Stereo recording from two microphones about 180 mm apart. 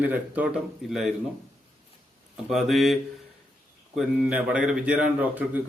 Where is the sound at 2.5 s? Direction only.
Centre (ahead or behind).